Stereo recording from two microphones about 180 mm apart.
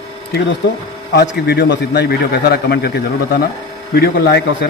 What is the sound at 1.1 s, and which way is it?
A man's voice, 70° left (ahead or behind).